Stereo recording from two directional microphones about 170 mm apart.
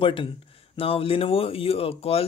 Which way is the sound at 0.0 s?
30° left (ahead or behind).